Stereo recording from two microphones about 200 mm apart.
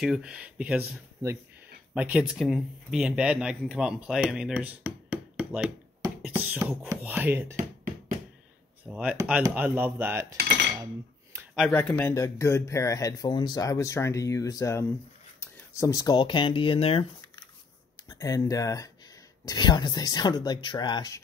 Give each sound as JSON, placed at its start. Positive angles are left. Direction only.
{"t": 0.0, "sound": "speech", "side_deg": -5}
{"t": 6.2, "sound": "beatboxing", "side_deg": -5}
{"t": 6.9, "sound": "speech", "side_deg": -10}
{"t": 8.8, "sound": "speech", "side_deg": -5}
{"t": 11.5, "sound": "speech", "side_deg": 5}
{"t": 18.0, "sound": "speech", "side_deg": 20}